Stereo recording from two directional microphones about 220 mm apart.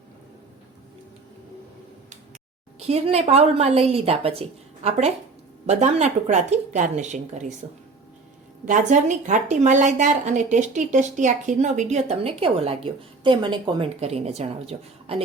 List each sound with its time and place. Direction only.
2.7 s a woman's voice: 30° right (ahead or behind)
8.6 s a woman's voice: 35° right (ahead or behind)